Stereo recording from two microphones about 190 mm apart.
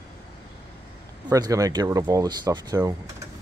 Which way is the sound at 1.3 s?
20° right (ahead or behind).